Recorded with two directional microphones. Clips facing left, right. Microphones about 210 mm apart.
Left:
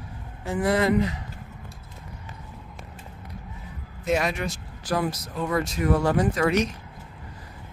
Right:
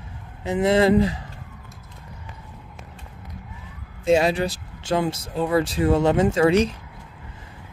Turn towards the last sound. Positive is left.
turn(degrees=-30)  # may be behind; listen again after turning